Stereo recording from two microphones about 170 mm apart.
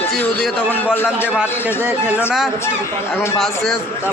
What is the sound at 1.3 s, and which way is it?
Speech, 10° right (ahead or behind).